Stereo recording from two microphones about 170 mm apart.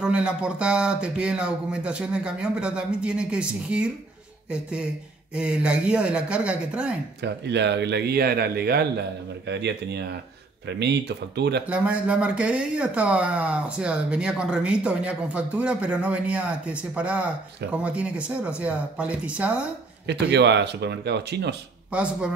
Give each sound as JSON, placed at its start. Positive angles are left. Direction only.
{"t": 0.0, "sound": "speech", "side_deg": -5}
{"t": 7.2, "sound": "speech", "side_deg": -85}
{"t": 9.5, "sound": "speech", "side_deg": -85}
{"t": 11.6, "sound": "speech", "side_deg": -5}
{"t": 20.1, "sound": "speech", "side_deg": -90}
{"t": 21.9, "sound": "speech", "side_deg": -5}